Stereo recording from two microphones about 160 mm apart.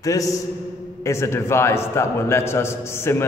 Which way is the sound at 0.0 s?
20° left (ahead or behind).